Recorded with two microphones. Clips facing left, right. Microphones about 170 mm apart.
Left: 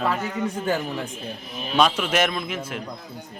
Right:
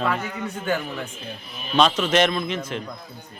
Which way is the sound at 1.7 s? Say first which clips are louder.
Right 2 dB; 10° left (ahead or behind).